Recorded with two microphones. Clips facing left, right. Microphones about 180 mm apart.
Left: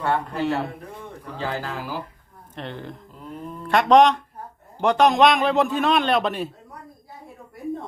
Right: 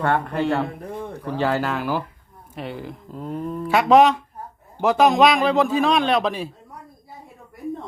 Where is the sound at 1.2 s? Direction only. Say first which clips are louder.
Right 7 dB; 75° right (ahead or behind).